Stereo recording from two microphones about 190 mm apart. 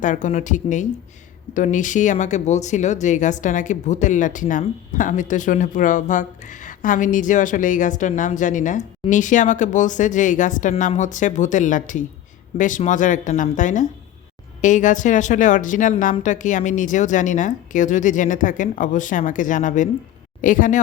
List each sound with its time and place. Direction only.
0.0 s speech: 40° left (ahead or behind)